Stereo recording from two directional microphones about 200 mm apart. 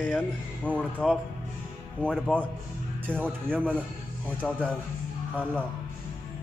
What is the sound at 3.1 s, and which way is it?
Speech, 10° right (ahead or behind).